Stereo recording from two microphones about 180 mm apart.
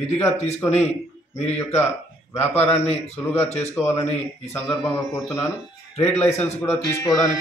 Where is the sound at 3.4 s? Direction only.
35° left (ahead or behind).